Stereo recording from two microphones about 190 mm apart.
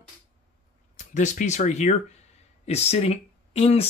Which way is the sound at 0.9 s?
40° left (ahead or behind).